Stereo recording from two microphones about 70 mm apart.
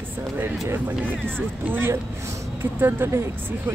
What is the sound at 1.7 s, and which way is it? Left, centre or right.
Speech, right.